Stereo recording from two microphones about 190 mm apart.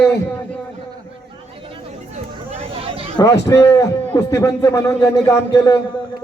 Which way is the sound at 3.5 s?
15° left (ahead or behind).